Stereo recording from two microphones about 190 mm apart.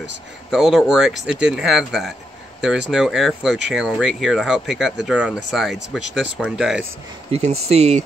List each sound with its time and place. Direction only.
0.5 s speech: centre (ahead or behind)
7.2 s speech: 35° right (ahead or behind)